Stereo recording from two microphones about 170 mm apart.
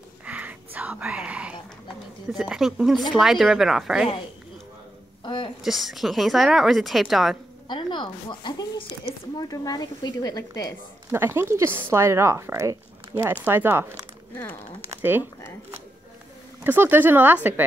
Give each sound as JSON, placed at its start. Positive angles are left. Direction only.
{"t": 0.2, "sound": "whispering", "side_deg": -10}
{"t": 2.3, "sound": "speech", "side_deg": 0}
{"t": 5.2, "sound": "a sound", "side_deg": 25}
{"t": 5.6, "sound": "speech", "side_deg": 0}
{"t": 7.6, "sound": "speech", "side_deg": 25}
{"t": 11.1, "sound": "speech", "side_deg": -15}
{"t": 14.3, "sound": "speech", "side_deg": 15}
{"t": 15.0, "sound": "speech", "side_deg": -10}
{"t": 16.6, "sound": "speech", "side_deg": -10}